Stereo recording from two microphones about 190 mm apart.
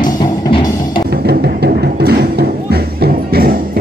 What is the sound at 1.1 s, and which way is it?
Music, 55° right (ahead or behind).